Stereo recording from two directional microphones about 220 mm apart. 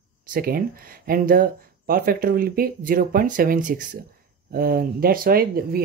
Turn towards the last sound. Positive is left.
turn(degrees=-45)  # may be behind; listen again after turning